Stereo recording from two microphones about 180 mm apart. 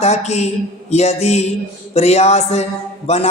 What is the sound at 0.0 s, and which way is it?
Speech, 40° left (ahead or behind).